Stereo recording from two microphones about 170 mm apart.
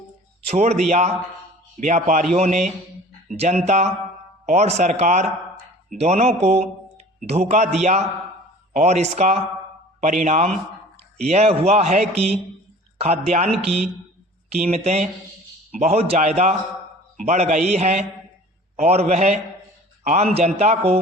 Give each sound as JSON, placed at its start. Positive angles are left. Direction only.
{"t": 0.4, "sound": "a man's voice", "side_deg": -40}
{"t": 15.7, "sound": "a man's voice", "side_deg": -45}